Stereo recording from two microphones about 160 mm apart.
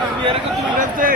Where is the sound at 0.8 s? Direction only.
60° right (ahead or behind).